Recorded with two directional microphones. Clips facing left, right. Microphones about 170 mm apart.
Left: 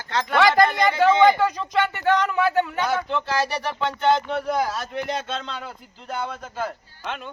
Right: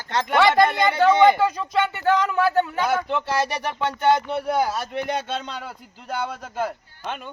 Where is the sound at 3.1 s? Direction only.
15° right (ahead or behind).